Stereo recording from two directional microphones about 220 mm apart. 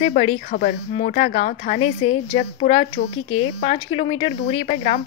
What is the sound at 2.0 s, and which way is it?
A woman's voice, 25° left (ahead or behind).